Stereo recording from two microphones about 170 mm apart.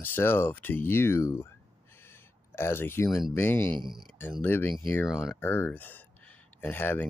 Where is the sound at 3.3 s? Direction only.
15° left (ahead or behind).